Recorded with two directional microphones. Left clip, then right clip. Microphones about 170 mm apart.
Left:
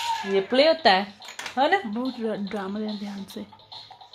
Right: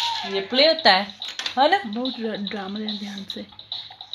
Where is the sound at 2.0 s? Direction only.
20° left (ahead or behind).